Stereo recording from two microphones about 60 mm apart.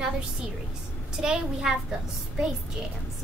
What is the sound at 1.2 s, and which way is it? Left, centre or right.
Speech, centre.